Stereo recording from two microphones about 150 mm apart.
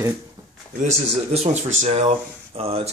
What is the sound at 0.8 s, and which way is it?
Speech, 45° right (ahead or behind).